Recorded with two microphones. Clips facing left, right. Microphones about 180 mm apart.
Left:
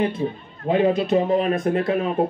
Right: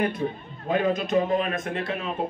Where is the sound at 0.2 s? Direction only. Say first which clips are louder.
Left 4 dB; 20° left (ahead or behind).